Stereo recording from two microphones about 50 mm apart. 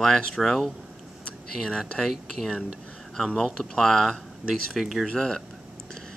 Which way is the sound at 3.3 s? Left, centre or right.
Centre.